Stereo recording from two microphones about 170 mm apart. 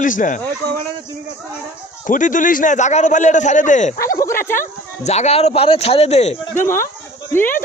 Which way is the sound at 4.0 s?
20° left (ahead or behind).